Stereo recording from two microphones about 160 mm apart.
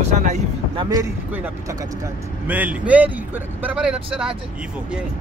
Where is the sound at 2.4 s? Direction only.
10° right (ahead or behind).